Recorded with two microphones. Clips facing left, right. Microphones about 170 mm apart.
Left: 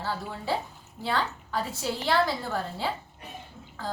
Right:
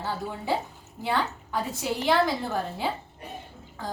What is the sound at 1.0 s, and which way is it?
A woman's voice, 20° right (ahead or behind).